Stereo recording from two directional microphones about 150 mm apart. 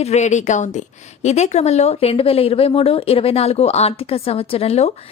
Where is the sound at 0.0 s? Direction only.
50° left (ahead or behind).